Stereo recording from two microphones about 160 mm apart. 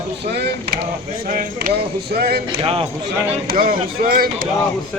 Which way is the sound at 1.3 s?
60° right (ahead or behind).